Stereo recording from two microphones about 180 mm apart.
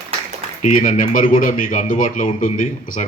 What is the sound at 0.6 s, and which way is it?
Speech, 45° left (ahead or behind).